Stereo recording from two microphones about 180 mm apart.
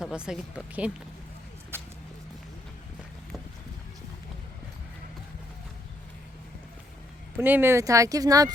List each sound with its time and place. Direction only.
0.0 s speech: 5° right (ahead or behind)
7.3 s speech: 10° right (ahead or behind)